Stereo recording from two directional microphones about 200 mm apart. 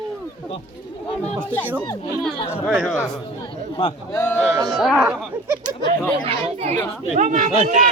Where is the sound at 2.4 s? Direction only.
5° left (ahead or behind).